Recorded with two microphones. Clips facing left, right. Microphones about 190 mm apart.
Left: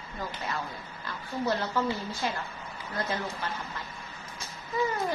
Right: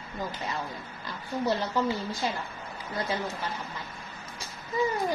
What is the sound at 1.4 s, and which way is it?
A woman's voice, 15° right (ahead or behind).